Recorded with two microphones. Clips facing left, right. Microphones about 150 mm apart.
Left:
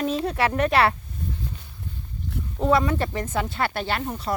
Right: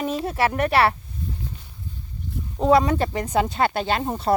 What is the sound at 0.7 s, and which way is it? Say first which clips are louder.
Speech: right 2 dB; 30° right (ahead or behind).